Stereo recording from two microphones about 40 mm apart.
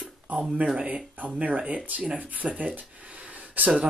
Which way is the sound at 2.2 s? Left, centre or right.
Right.